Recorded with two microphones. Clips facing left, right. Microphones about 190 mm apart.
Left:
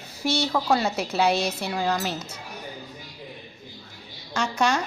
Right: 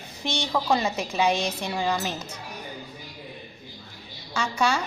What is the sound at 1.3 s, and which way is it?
Speech, 15° right (ahead or behind).